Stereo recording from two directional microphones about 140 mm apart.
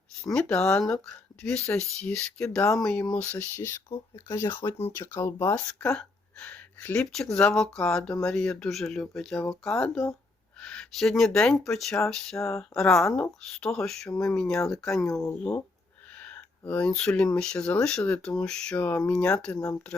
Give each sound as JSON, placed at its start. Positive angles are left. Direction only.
{"t": 0.3, "sound": "speech", "side_deg": 10}
{"t": 12.4, "sound": "speech", "side_deg": 20}
{"t": 12.7, "sound": "speech", "side_deg": 5}
{"t": 15.1, "sound": "speech", "side_deg": 20}
{"t": 16.1, "sound": "a sound", "side_deg": 10}
{"t": 17.3, "sound": "speech", "side_deg": 5}